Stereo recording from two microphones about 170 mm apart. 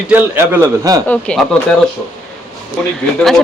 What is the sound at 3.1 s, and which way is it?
Speech, 5° left (ahead or behind).